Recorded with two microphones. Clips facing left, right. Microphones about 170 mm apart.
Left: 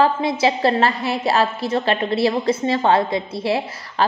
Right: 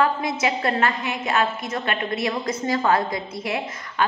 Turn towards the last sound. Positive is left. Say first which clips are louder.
# left 3 dB
turn(degrees=30)  # may be behind; listen again after turning